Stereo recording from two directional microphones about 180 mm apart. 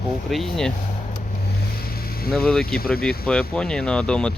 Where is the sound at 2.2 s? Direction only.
55° left (ahead or behind).